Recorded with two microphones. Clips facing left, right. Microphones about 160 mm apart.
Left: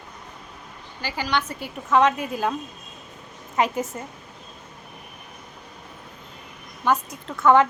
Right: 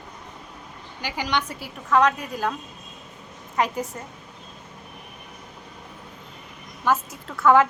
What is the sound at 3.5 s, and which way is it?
Speech, centre (ahead or behind).